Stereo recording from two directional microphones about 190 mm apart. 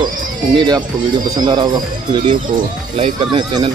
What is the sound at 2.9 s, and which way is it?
Speech, 30° right (ahead or behind).